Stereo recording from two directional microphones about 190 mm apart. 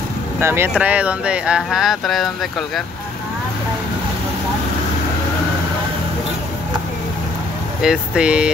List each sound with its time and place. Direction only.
0.4 s speech: 10° right (ahead or behind)
7.8 s speech: 5° right (ahead or behind)